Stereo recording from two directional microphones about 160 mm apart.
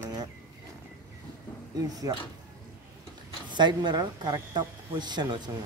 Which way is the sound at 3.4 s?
30° right (ahead or behind).